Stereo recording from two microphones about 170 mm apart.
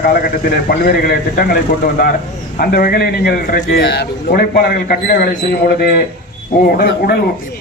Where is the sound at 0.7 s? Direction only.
60° left (ahead or behind).